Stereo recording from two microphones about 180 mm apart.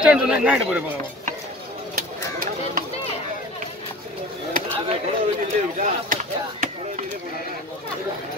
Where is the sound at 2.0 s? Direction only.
50° right (ahead or behind).